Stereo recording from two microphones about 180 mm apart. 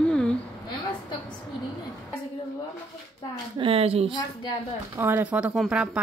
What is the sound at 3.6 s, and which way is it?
Speech, 30° right (ahead or behind).